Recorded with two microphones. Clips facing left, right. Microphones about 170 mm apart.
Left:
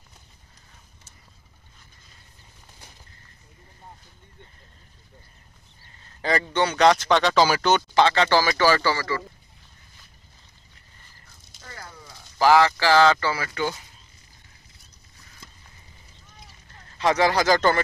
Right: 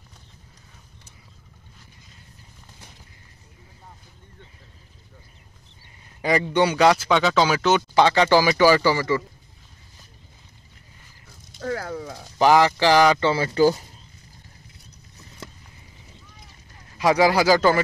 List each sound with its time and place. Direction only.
6.0 s speech: 15° right (ahead or behind)
11.6 s a sound: 75° right (ahead or behind)
12.4 s speech: 20° right (ahead or behind)
13.3 s speech: 30° right (ahead or behind)
15.4 s a sound: 70° right (ahead or behind)
16.9 s speech: 10° right (ahead or behind)